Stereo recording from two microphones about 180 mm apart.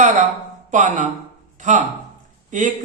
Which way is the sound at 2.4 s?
45° right (ahead or behind).